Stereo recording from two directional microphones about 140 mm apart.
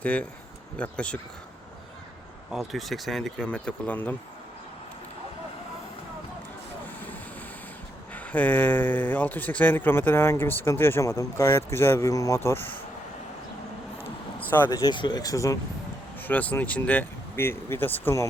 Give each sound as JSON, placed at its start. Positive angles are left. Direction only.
{"t": 0.0, "sound": "speech", "side_deg": 10}
{"t": 2.5, "sound": "speech", "side_deg": 0}
{"t": 8.1, "sound": "speech", "side_deg": 10}
{"t": 14.3, "sound": "vehicle", "side_deg": 15}
{"t": 14.8, "sound": "speech", "side_deg": 30}
{"t": 16.2, "sound": "speech", "side_deg": 10}